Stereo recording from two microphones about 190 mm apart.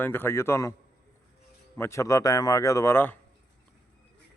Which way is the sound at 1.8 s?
15° left (ahead or behind).